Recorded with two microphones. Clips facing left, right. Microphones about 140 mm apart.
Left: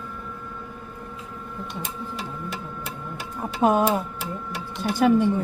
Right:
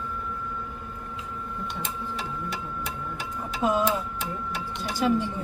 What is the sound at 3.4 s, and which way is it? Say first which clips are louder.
A woman's voice: left 5 dB; 55° left (ahead or behind).